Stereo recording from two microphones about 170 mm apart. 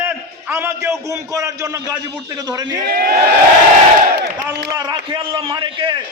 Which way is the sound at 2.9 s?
65° right (ahead or behind).